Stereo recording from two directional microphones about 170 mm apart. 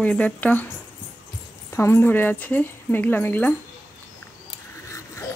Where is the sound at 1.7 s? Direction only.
15° left (ahead or behind).